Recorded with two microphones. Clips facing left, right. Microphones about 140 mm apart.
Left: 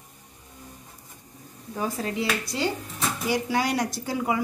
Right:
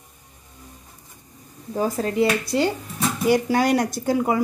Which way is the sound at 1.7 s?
40° right (ahead or behind).